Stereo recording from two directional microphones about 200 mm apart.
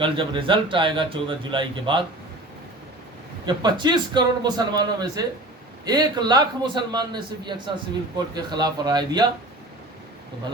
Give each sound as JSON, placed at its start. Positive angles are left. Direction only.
{"t": 0.0, "sound": "a man's voice", "side_deg": -25}
{"t": 3.4, "sound": "a man's voice", "side_deg": -20}